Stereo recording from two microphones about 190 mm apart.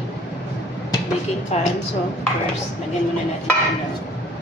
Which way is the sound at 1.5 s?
35° left (ahead or behind).